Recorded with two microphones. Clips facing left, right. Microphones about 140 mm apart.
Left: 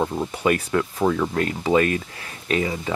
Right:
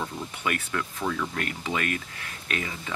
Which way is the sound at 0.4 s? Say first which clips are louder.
Left 9 dB; 35° left (ahead or behind).